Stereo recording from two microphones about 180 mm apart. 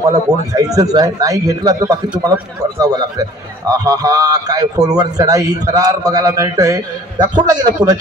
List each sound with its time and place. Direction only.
0.5 s a man's voice: 20° right (ahead or behind)